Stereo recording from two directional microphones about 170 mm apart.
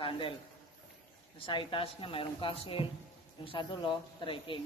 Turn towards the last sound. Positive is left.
turn(degrees=30)  # may be behind; listen again after turning